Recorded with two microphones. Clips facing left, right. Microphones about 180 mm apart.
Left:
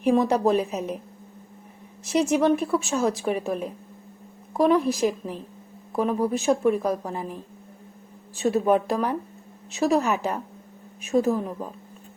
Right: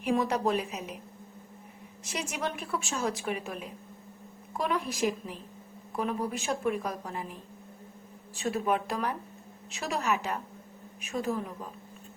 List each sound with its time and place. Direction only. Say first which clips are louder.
0.0 s a woman's voice: left 7 dB; 35° left (ahead or behind)
2.1 s a woman's voice: left 14 dB; 40° left (ahead or behind)
4.9 s a woman's voice: left 7 dB; 25° left (ahead or behind)
8.4 s a woman's voice: left 8 dB; 30° left (ahead or behind)